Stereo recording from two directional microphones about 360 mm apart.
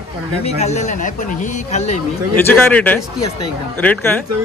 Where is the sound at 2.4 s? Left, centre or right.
Centre.